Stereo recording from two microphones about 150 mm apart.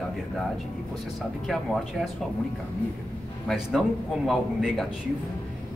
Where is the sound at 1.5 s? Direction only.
Centre (ahead or behind).